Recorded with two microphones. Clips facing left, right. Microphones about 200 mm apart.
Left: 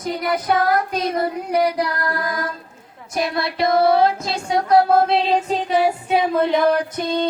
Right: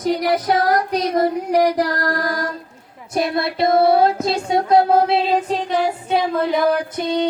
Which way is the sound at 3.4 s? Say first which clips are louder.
Right 1 dB; 30° right (ahead or behind).